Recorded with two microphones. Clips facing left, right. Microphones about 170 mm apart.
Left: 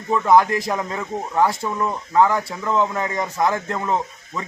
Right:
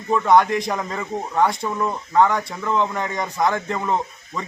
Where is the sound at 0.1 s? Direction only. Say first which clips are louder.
Even; centre (ahead or behind).